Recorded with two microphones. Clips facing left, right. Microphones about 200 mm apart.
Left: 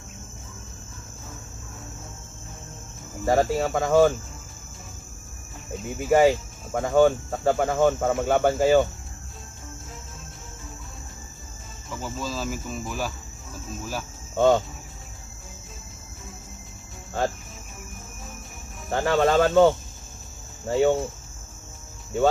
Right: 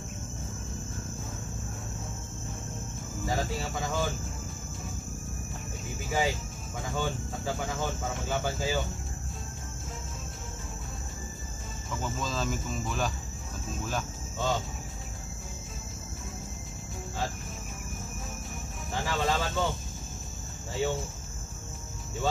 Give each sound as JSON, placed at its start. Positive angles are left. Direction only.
{"t": 3.3, "sound": "speech", "side_deg": 60}
{"t": 6.1, "sound": "speech", "side_deg": 60}
{"t": 12.0, "sound": "speech", "side_deg": 5}
{"t": 14.3, "sound": "cricket", "side_deg": 60}
{"t": 18.9, "sound": "speech", "side_deg": 60}